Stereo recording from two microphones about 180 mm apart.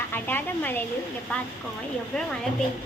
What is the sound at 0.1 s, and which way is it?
Speech, 10° left (ahead or behind).